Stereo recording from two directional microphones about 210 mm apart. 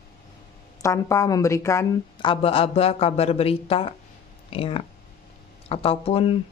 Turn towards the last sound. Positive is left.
turn(degrees=25)  # may be behind; listen again after turning